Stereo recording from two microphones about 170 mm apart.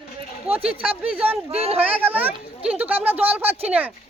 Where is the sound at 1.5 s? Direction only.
35° right (ahead or behind).